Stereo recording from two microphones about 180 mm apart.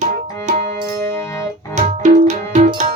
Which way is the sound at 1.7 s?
40° right (ahead or behind).